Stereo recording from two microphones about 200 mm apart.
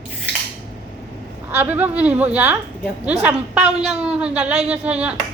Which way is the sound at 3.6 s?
30° right (ahead or behind).